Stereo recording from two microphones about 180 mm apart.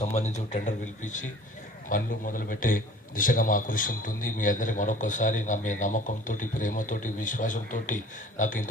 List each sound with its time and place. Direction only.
0.0 s a man's voice: 40° left (ahead or behind)